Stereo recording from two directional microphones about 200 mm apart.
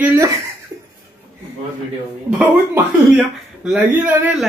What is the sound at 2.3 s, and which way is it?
Speech, 5° right (ahead or behind).